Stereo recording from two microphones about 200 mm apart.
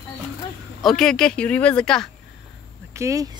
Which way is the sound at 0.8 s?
Centre (ahead or behind).